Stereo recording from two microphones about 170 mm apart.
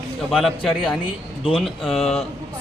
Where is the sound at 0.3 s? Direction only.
Centre (ahead or behind).